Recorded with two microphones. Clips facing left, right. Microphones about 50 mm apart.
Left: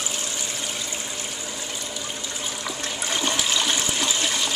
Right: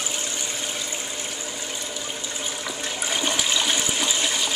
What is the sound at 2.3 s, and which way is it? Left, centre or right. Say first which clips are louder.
Toilet flush: even; centre.